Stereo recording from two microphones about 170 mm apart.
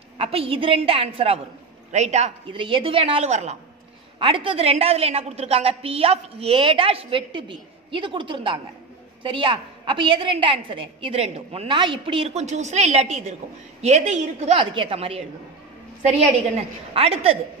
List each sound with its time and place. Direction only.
0.2 s a woman's voice: 35° right (ahead or behind)
4.2 s a woman's voice: 30° right (ahead or behind)